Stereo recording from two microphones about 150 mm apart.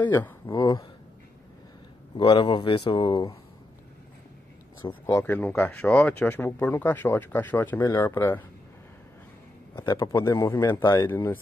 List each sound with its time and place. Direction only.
0.5 s speech: 30° left (ahead or behind)
2.1 s speech: 30° left (ahead or behind)
5.0 s speech: 15° left (ahead or behind)
9.8 s a man's voice: 20° left (ahead or behind)